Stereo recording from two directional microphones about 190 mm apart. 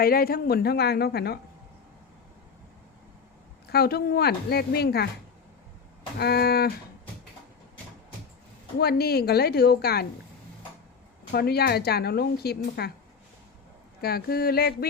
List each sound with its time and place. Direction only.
0.0 s speech: 50° left (ahead or behind)
3.7 s speech: 55° left (ahead or behind)
6.1 s speech: 55° left (ahead or behind)
8.8 s speech: 55° left (ahead or behind)
11.3 s speech: 55° left (ahead or behind)
14.0 s speech: 55° left (ahead or behind)